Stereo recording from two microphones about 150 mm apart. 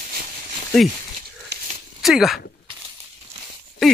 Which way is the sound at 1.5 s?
90° right.